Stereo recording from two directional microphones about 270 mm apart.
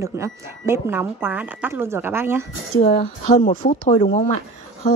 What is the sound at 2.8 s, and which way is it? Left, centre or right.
Speech, left.